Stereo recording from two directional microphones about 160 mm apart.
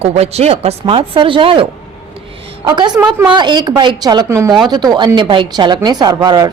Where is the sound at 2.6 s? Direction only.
25° right (ahead or behind).